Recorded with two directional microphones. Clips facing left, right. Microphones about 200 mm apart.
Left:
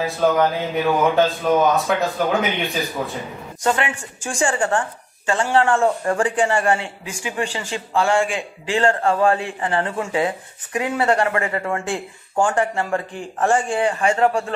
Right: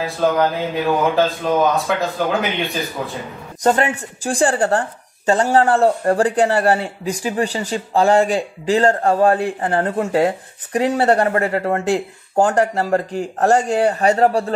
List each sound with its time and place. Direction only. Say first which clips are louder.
0.0 s speech: even; centre (ahead or behind)
3.6 s a woman's voice: right 5 dB; 40° right (ahead or behind)